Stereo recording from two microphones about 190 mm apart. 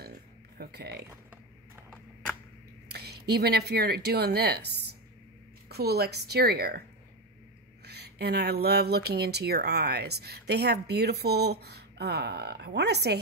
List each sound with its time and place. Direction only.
0.6 s speech: 55° right (ahead or behind)
2.9 s speech: 60° right (ahead or behind)
5.7 s speech: 55° right (ahead or behind)
7.8 s speech: 60° right (ahead or behind)